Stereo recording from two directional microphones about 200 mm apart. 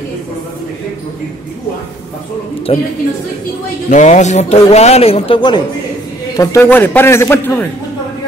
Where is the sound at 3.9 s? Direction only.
35° left (ahead or behind); by 7.6 s 10° left (ahead or behind).